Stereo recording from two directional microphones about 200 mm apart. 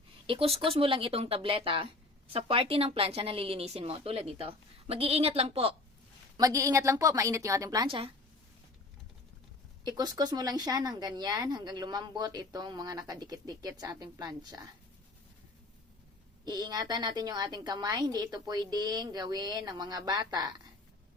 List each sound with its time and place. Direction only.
0.3 s speech: 30° right (ahead or behind)
6.3 s a woman's voice: 15° right (ahead or behind)
9.8 s speech: 20° right (ahead or behind)
16.5 s speech: 20° right (ahead or behind)